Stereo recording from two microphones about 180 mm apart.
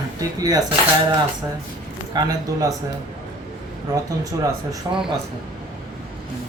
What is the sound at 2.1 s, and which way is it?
Speech, 20° right (ahead or behind).